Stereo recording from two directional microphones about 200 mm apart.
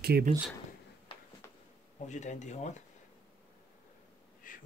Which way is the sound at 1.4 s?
15° left (ahead or behind).